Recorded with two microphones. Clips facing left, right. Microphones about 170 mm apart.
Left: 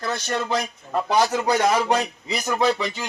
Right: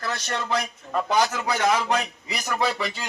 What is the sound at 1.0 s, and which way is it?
A man's voice, 30° left (ahead or behind).